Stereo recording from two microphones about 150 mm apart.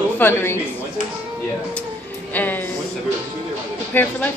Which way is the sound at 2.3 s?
10° left (ahead or behind).